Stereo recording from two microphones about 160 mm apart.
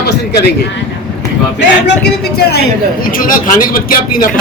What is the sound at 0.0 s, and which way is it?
Speech, 90° left.